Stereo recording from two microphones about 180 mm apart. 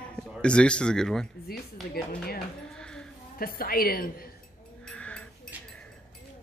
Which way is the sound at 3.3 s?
55° left (ahead or behind).